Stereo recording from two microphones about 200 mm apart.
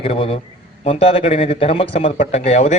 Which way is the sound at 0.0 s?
30° left (ahead or behind).